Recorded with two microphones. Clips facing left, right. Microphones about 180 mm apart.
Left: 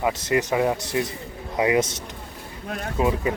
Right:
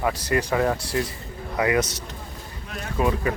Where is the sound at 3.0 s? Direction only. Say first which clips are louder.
Left 1 dB; 20° left (ahead or behind).